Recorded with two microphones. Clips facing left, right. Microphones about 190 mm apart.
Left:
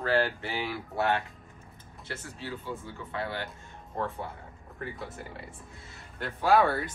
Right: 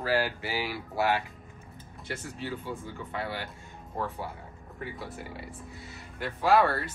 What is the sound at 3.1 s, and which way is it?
Speech, 15° right (ahead or behind).